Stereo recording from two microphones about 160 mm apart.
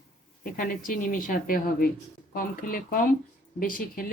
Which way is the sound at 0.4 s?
60° left (ahead or behind).